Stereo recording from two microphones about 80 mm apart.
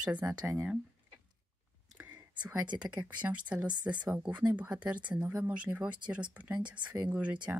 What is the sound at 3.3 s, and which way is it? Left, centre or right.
Speech, centre.